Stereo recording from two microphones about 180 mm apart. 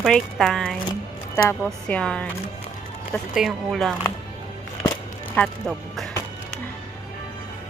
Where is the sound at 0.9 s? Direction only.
15° left (ahead or behind).